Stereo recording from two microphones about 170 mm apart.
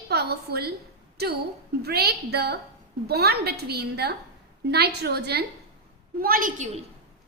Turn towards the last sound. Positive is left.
turn(degrees=-55)  # may be behind; listen again after turning